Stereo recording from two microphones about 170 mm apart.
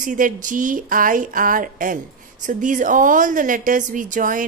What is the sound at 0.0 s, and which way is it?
A woman's voice, 50° right (ahead or behind).